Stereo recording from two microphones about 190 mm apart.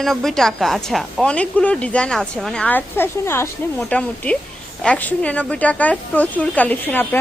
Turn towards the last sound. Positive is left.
turn(degrees=10)  # may be behind; listen again after turning